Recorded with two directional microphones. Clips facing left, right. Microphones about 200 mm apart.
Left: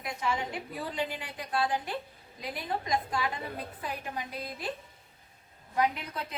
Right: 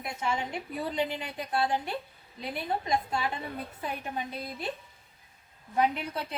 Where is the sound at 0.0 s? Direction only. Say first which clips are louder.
Even; 25° right (ahead or behind).